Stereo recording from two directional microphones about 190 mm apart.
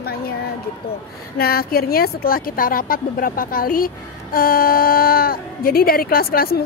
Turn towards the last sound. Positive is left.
turn(degrees=50)  # may be behind; listen again after turning